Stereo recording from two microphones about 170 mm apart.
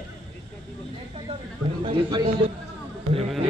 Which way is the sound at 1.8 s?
30° right (ahead or behind).